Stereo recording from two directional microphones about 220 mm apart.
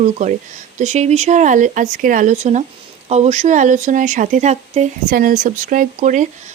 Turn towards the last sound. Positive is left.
turn(degrees=-35)  # may be behind; listen again after turning